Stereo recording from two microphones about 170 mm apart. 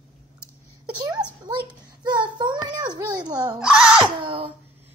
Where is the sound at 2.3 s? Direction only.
25° right (ahead or behind).